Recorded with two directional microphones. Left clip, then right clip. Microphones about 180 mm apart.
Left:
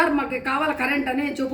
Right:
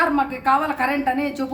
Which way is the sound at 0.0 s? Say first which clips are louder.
Right 2 dB; 20° right (ahead or behind).